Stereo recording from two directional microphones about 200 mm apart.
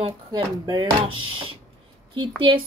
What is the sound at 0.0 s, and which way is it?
A woman's voice, 20° right (ahead or behind).